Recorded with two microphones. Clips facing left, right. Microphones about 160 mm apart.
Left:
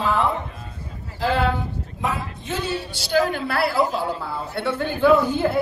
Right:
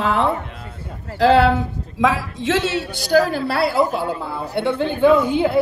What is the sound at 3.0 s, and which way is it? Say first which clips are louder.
Speech: right 4 dB; 35° right (ahead or behind).